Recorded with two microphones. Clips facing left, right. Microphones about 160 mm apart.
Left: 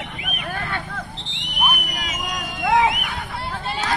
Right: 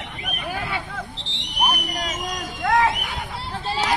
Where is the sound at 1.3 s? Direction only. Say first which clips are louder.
Right 1 dB; 35° right (ahead or behind).